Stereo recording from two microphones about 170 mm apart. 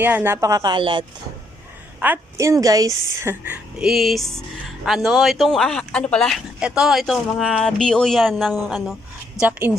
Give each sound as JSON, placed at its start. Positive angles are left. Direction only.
{"t": 0.0, "sound": "a woman's voice", "side_deg": -10}
{"t": 2.0, "sound": "a woman's voice", "side_deg": -15}
{"t": 9.4, "sound": "a woman's voice", "side_deg": -10}